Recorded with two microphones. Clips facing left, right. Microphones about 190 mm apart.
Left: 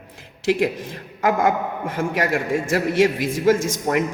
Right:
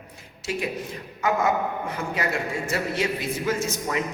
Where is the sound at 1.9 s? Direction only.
90° left; by 4.1 s 65° left (ahead or behind).